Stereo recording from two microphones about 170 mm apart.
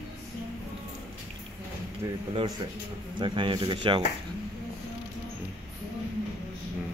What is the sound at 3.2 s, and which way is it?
Speech, 30° right (ahead or behind).